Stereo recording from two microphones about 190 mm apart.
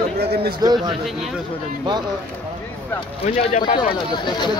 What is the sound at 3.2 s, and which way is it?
Speech, 35° left (ahead or behind).